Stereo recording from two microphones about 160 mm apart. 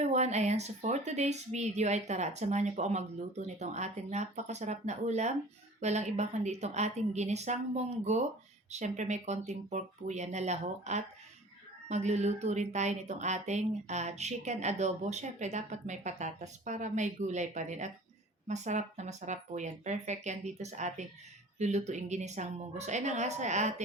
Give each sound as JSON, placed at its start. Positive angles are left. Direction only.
{"t": 0.0, "sound": "a woman's voice", "side_deg": -45}